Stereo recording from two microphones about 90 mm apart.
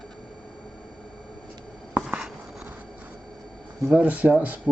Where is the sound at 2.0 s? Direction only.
5° right (ahead or behind).